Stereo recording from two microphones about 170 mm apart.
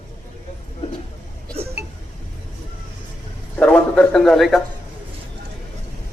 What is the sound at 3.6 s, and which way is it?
Speech, 5° left (ahead or behind).